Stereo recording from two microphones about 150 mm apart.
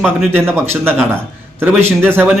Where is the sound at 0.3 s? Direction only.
15° right (ahead or behind).